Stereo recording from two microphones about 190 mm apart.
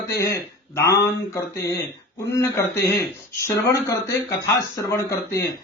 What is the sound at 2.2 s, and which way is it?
A man's voice, 15° left (ahead or behind).